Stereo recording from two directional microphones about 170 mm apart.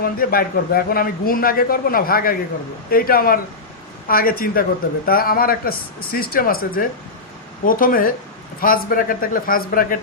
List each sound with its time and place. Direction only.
0.0 s a man's voice: 60° left (ahead or behind)